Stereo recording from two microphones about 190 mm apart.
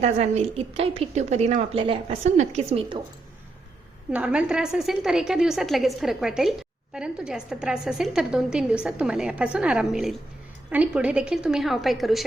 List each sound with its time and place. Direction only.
0.0 s a woman's voice: 35° right (ahead or behind)
4.1 s a woman's voice: 5° right (ahead or behind)